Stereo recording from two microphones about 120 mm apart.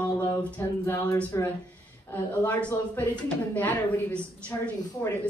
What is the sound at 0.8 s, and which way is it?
A woman's voice, 20° left (ahead or behind).